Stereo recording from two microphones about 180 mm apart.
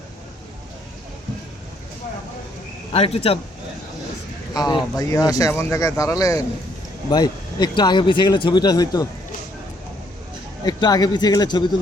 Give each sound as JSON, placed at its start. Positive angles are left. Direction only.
{"t": 2.9, "sound": "speech", "side_deg": 30}
{"t": 4.5, "sound": "speech", "side_deg": 20}
{"t": 10.7, "sound": "speech", "side_deg": 20}